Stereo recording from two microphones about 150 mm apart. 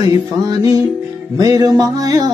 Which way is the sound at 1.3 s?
25° right (ahead or behind).